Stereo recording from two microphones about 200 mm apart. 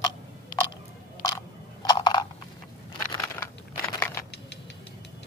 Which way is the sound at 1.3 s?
20° left (ahead or behind).